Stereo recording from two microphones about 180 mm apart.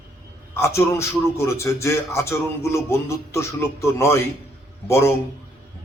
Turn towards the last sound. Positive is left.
turn(degrees=15)  # may be behind; listen again after turning